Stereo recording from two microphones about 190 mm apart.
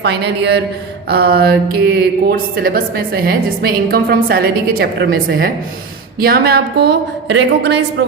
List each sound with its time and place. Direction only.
0.0 s a woman's voice: 60° right (ahead or behind)